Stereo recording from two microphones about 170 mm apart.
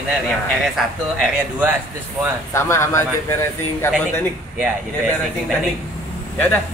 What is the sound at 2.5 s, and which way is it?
Speech, 15° left (ahead or behind).